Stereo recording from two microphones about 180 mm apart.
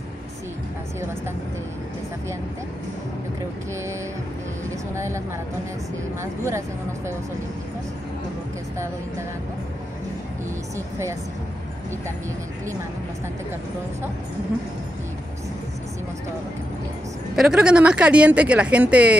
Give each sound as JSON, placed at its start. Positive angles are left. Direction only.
{"t": 4.9, "sound": "speech", "side_deg": -15}
{"t": 17.4, "sound": "speech", "side_deg": -5}